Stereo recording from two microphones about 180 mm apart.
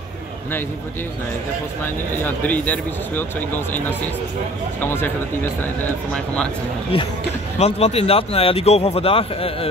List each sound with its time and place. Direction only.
2.2 s speech: 10° left (ahead or behind)
7.5 s speech: 35° left (ahead or behind)